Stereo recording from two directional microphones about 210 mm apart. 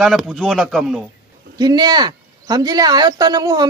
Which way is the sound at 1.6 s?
20° right (ahead or behind).